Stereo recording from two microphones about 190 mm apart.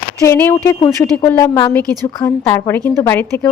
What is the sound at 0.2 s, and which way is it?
A woman's voice, 10° left (ahead or behind).